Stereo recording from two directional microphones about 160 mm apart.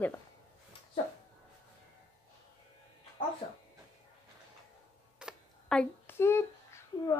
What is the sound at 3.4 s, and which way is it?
Speech, 35° left (ahead or behind).